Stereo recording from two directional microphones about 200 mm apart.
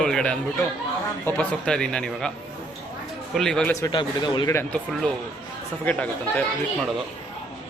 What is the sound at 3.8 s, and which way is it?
Speech, 20° left (ahead or behind).